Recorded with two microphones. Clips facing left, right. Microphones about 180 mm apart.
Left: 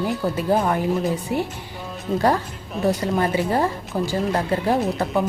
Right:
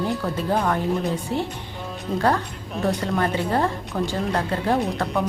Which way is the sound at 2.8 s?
10° left (ahead or behind).